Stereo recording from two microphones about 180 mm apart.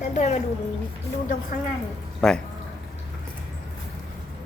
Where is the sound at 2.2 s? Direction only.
5° left (ahead or behind).